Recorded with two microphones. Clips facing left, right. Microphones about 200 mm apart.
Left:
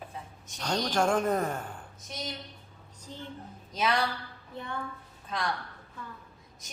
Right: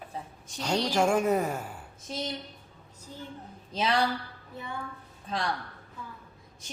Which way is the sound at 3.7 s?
30° right (ahead or behind).